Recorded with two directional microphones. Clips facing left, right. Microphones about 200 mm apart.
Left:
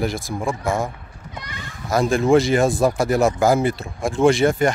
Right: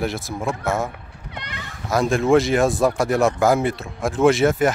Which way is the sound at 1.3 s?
65° right (ahead or behind).